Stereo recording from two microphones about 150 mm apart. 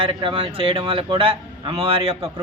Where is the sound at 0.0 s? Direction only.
35° right (ahead or behind).